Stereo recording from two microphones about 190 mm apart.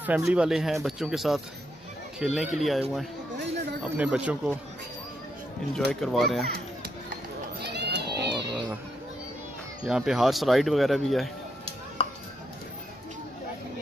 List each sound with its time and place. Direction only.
0.0 s speech: 10° right (ahead or behind)
3.8 s speech: 5° right (ahead or behind)
5.9 s speech: centre (ahead or behind)
6.4 s children playing: 50° right (ahead or behind)
7.6 s cat: 60° right (ahead or behind)
9.8 s speech: 5° right (ahead or behind)
12.0 s a sound: 30° left (ahead or behind)